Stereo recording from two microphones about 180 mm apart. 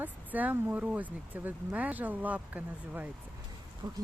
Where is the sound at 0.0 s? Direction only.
10° right (ahead or behind).